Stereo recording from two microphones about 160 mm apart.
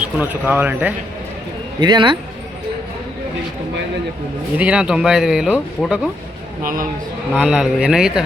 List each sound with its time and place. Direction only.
0.2 s speech: 10° right (ahead or behind)
1.8 s speech: 30° right (ahead or behind)
4.5 s speech: 5° right (ahead or behind)
6.6 s speech: 60° right (ahead or behind)
7.3 s speech: 5° right (ahead or behind)